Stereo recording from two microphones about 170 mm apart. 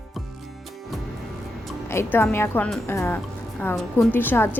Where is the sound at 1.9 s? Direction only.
15° left (ahead or behind).